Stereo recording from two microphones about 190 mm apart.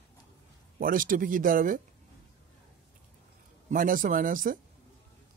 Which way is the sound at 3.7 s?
45° right (ahead or behind).